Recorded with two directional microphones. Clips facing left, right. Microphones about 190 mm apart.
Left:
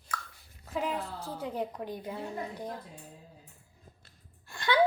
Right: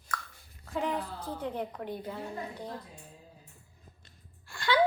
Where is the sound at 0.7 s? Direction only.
10° left (ahead or behind).